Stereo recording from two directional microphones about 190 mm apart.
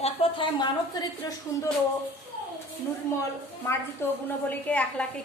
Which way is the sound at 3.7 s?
10° left (ahead or behind).